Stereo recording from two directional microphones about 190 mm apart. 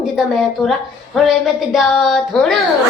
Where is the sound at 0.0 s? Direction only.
Centre (ahead or behind).